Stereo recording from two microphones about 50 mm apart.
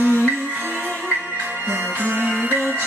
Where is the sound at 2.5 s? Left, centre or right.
Right.